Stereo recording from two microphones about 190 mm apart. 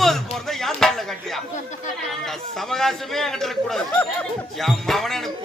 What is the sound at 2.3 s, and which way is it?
Speech, centre (ahead or behind).